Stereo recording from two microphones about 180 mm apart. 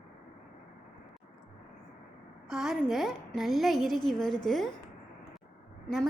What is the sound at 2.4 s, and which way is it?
A woman's voice, 5° right (ahead or behind).